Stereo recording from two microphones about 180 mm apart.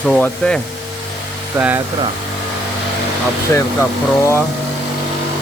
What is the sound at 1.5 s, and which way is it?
Speech, 10° right (ahead or behind).